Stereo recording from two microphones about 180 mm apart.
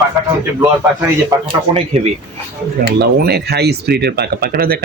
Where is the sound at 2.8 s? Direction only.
60° right (ahead or behind).